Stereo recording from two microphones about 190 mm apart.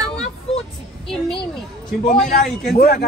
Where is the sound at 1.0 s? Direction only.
Centre (ahead or behind).